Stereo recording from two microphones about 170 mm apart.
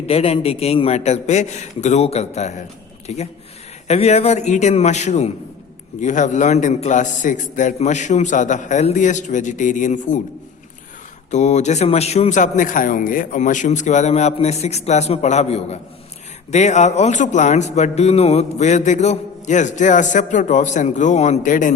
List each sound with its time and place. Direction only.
0.1 s a man's voice: 35° left (ahead or behind)
11.3 s a man's voice: 45° left (ahead or behind)